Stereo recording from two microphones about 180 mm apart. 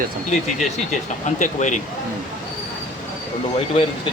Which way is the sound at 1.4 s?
40° left (ahead or behind).